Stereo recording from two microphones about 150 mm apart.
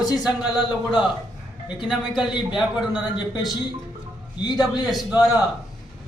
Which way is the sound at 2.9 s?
30° left (ahead or behind).